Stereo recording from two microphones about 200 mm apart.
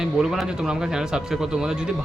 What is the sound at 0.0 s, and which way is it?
Speech, 5° right (ahead or behind).